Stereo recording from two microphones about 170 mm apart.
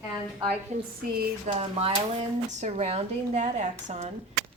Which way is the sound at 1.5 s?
35° right (ahead or behind).